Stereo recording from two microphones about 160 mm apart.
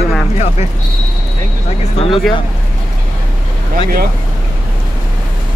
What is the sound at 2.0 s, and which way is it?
Speech, 35° left (ahead or behind).